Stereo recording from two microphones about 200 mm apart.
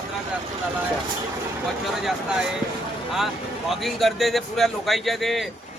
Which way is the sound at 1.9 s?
5° right (ahead or behind).